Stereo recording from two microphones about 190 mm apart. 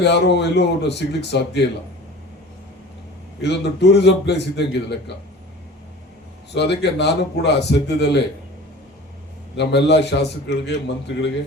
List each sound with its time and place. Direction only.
0.0 s a man's voice: 65° left (ahead or behind)
3.4 s a man's voice: 65° left (ahead or behind)
6.5 s a man's voice: 65° left (ahead or behind)
9.6 s a man's voice: 60° left (ahead or behind)